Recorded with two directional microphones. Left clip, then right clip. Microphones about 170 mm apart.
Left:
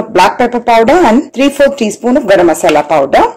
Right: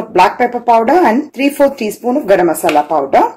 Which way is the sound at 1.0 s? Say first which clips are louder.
Left 4 dB; 20° left (ahead or behind).